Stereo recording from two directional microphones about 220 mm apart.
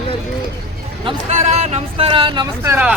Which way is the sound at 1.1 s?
30° right (ahead or behind).